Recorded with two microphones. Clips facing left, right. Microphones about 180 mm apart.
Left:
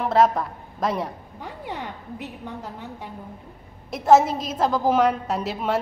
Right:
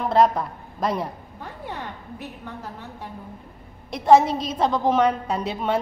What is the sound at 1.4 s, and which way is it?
A woman's voice, 15° left (ahead or behind).